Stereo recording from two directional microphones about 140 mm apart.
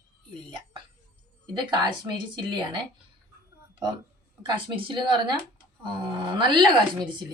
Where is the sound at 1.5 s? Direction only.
35° right (ahead or behind).